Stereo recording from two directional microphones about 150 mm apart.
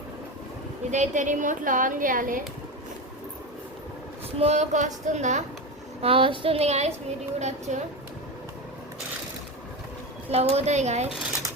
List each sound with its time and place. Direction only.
0.9 s a woman's voice: 50° right (ahead or behind)
4.4 s speech: 45° right (ahead or behind)
6.0 s child singing: 35° right (ahead or behind)
7.3 s speech: 50° right (ahead or behind)
10.3 s speech: 45° right (ahead or behind)